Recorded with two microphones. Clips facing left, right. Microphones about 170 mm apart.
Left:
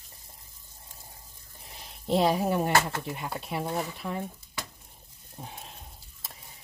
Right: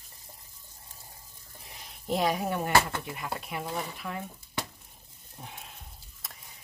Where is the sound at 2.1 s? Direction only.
30° left (ahead or behind).